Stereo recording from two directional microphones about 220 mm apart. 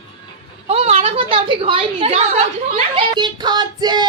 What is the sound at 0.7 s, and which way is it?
A woman's voice, 30° right (ahead or behind).